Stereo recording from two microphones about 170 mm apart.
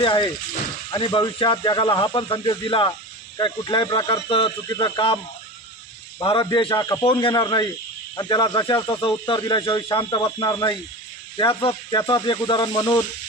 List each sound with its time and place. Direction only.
0.0 s speech: 25° left (ahead or behind)